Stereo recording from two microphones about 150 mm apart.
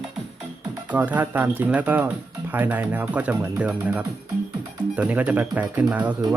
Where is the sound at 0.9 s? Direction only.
10° right (ahead or behind).